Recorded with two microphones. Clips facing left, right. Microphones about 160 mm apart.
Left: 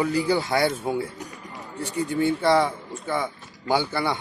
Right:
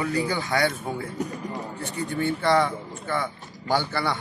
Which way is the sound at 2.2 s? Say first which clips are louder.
Left 2 dB; 10° left (ahead or behind).